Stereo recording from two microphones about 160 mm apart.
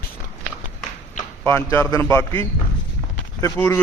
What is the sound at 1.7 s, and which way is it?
Speech, 15° left (ahead or behind).